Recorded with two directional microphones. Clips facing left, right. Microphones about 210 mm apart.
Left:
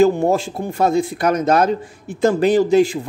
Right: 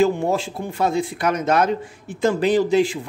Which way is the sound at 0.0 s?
45° left (ahead or behind).